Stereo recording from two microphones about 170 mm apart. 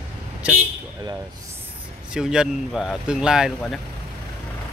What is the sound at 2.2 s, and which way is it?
Speech, 5° right (ahead or behind).